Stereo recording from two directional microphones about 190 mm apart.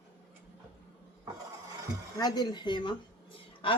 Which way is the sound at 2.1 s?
20° left (ahead or behind).